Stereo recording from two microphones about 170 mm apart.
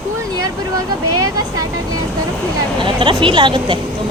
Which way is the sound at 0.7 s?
20° right (ahead or behind).